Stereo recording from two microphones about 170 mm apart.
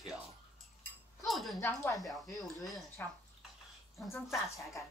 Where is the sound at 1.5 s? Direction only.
15° left (ahead or behind).